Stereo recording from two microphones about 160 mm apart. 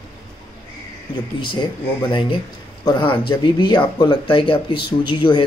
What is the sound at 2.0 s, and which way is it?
Speech, 30° left (ahead or behind).